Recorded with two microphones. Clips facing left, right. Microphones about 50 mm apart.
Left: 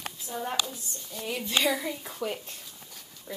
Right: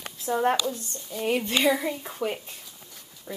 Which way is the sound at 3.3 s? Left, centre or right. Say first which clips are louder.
Right 3 dB; centre.